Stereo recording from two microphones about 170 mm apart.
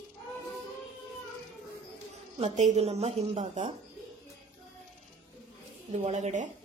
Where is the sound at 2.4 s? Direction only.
45° right (ahead or behind).